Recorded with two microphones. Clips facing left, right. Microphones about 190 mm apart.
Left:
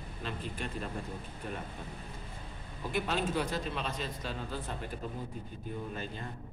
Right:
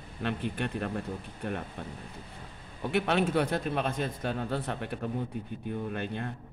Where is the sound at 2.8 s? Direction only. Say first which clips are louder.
Right 6 dB; 70° right (ahead or behind).